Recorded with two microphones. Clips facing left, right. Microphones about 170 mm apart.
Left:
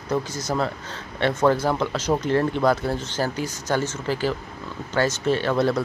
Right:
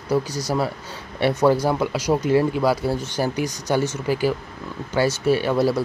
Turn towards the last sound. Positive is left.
turn(degrees=-5)  # may be behind; listen again after turning